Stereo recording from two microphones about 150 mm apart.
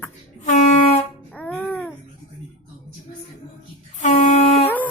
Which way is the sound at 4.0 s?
55° left (ahead or behind).